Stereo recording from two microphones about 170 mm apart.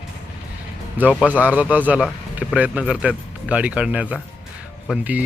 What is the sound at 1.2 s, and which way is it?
Speech, 10° right (ahead or behind).